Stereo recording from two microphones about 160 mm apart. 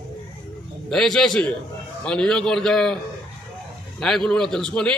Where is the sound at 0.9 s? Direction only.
5° left (ahead or behind).